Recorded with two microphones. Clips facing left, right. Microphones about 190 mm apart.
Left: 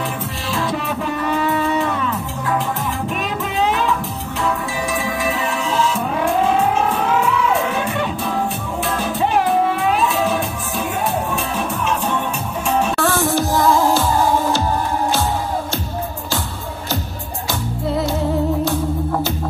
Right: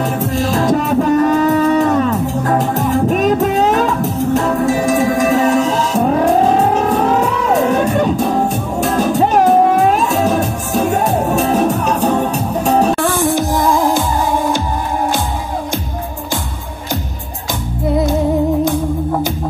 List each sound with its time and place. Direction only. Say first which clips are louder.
0.2 s music: right 8 dB; 45° right (ahead or behind)
12.9 s music: right 3 dB; 15° right (ahead or behind)
17.8 s music: right 6 dB; 20° right (ahead or behind)